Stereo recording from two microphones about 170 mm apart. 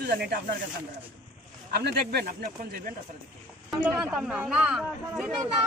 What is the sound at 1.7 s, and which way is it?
Speech, 70° right (ahead or behind).